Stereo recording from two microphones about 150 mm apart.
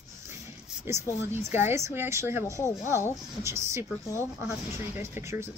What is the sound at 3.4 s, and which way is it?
A woman's voice, 20° right (ahead or behind).